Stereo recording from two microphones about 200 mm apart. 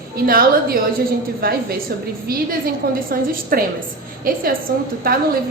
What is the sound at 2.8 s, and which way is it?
A woman's voice, 50° right (ahead or behind).